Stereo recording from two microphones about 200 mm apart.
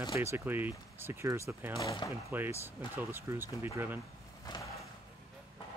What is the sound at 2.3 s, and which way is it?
Speech, 10° right (ahead or behind).